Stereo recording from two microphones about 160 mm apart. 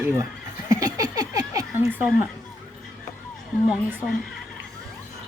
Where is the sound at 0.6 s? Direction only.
20° right (ahead or behind).